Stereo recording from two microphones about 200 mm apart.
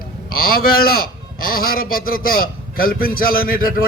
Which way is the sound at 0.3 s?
50° left (ahead or behind).